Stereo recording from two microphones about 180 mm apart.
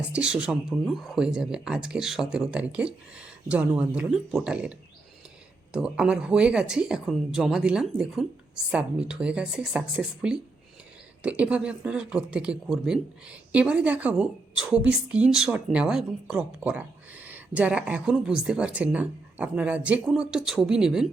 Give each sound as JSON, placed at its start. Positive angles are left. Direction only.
{"t": 0.1, "sound": "speech", "side_deg": -5}
{"t": 5.7, "sound": "speech", "side_deg": -5}